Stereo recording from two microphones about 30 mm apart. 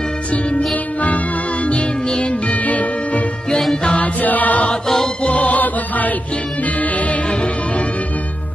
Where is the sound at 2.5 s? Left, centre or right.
Left.